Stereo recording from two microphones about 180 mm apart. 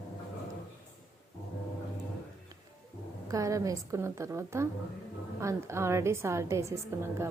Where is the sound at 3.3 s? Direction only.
15° right (ahead or behind).